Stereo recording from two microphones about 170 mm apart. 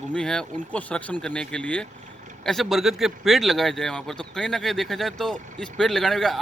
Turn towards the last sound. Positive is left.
turn(degrees=0)  # may be behind; listen again after turning